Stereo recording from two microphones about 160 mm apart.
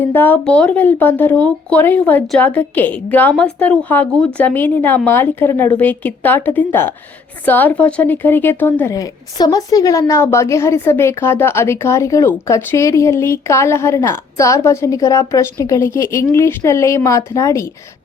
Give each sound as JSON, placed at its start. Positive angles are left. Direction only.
{"t": 0.0, "sound": "speech", "side_deg": 10}